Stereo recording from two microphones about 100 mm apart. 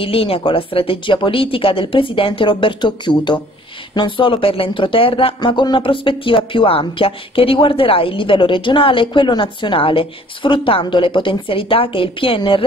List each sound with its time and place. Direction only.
0.0 s speech: 65° left (ahead or behind)